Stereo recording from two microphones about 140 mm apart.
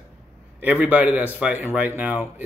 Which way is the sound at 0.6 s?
10° right (ahead or behind).